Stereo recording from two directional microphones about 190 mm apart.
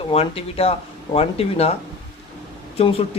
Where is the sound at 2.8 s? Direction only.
30° left (ahead or behind).